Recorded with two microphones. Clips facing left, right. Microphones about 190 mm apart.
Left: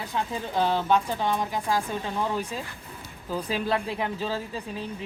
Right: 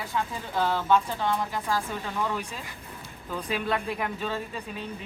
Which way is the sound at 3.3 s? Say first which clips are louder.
Left 2 dB; 30° left (ahead or behind).